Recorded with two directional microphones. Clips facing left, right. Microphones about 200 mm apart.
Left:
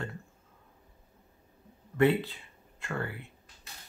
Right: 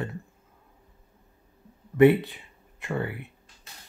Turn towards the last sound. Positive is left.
turn(degrees=-20)  # may be behind; listen again after turning